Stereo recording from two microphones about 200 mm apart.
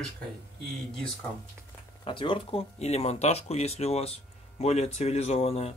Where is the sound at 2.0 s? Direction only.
25° left (ahead or behind).